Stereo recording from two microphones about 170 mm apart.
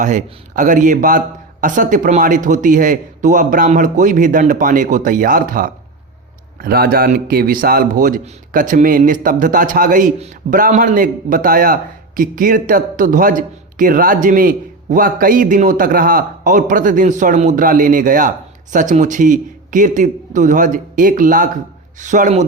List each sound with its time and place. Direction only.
0.0 s a man's voice: 50° right (ahead or behind)